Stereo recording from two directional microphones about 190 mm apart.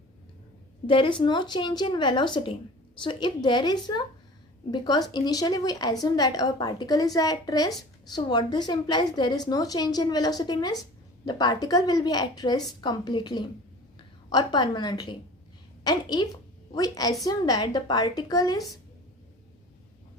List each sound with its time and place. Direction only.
0.9 s a woman's voice: 25° left (ahead or behind)